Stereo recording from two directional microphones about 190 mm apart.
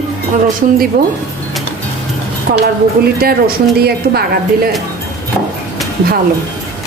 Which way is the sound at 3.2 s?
55° right (ahead or behind).